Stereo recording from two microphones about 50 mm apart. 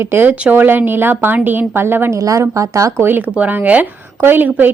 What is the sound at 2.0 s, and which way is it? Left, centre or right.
Speech, right.